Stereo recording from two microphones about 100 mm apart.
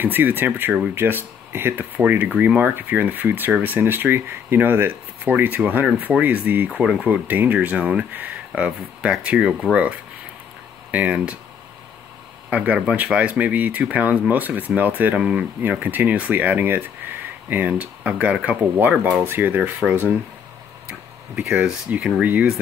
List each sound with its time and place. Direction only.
0.0 s speech: 20° right (ahead or behind); by 9.8 s 5° right (ahead or behind)
10.9 s speech: 15° right (ahead or behind)
12.4 s speech: 15° right (ahead or behind)
21.4 s speech: 10° right (ahead or behind)